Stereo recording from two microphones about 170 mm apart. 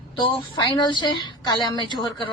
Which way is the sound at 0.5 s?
25° left (ahead or behind).